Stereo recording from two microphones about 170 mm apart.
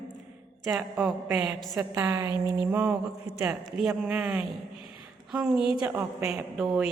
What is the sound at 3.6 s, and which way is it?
A woman's voice, centre (ahead or behind).